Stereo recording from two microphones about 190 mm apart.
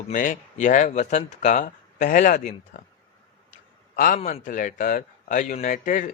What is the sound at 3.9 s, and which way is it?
Speech, 45° left (ahead or behind).